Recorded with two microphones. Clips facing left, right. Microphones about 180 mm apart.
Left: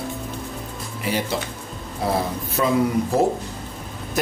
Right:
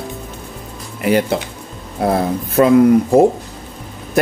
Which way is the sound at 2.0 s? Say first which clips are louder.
Right 7 dB; 55° right (ahead or behind).